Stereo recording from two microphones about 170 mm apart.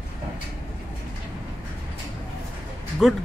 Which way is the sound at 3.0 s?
Centre (ahead or behind).